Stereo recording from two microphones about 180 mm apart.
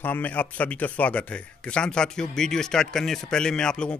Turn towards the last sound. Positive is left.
turn(degrees=5)  # may be behind; listen again after turning